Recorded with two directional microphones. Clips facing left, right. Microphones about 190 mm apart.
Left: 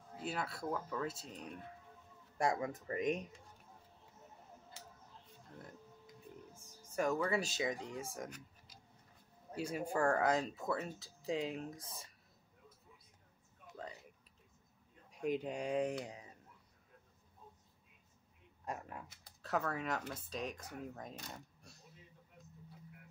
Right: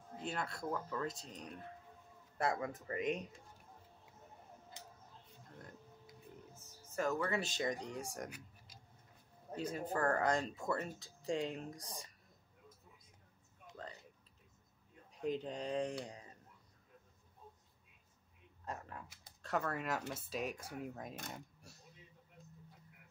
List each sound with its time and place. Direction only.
0.2 s speech: 5° left (ahead or behind)
6.5 s speech: 15° left (ahead or behind)
9.6 s speech: 10° left (ahead or behind)
15.1 s speech: 10° left (ahead or behind)
18.7 s typewriter: 15° left (ahead or behind)
19.4 s speech: centre (ahead or behind)